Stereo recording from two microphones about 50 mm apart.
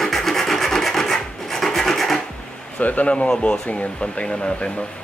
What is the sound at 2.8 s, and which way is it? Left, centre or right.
Speech, left.